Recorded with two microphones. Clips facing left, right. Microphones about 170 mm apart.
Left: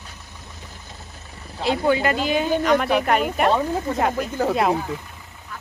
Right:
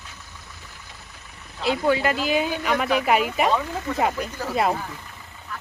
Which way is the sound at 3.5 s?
35° left (ahead or behind).